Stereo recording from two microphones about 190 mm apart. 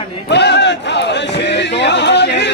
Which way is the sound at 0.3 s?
65° left (ahead or behind).